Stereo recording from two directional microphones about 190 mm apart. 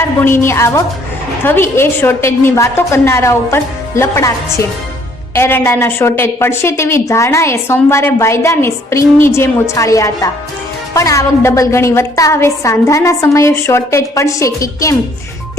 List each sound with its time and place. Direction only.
0.0 s a woman's voice: 15° left (ahead or behind)